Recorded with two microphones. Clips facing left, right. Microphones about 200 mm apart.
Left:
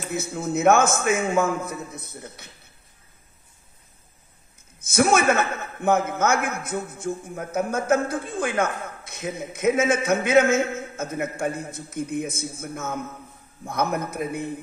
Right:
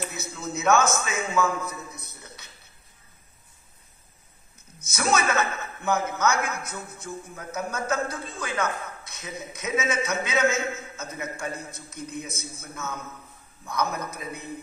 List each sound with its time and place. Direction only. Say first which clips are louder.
0.0 s a man's voice: left 6 dB; 50° left (ahead or behind)
4.7 s a man's voice: left 6 dB; 55° left (ahead or behind)